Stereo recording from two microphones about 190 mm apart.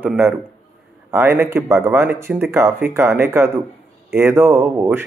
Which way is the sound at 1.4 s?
15° right (ahead or behind).